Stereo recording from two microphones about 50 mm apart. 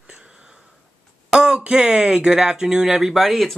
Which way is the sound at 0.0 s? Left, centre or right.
Centre.